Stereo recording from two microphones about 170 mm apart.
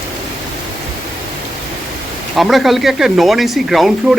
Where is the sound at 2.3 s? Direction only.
Centre (ahead or behind).